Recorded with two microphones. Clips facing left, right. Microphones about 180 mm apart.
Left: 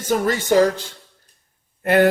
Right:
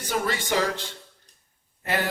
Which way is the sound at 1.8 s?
55° left (ahead or behind).